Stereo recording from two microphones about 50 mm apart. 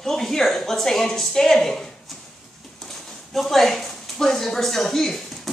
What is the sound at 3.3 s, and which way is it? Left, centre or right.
A woman's voice, centre.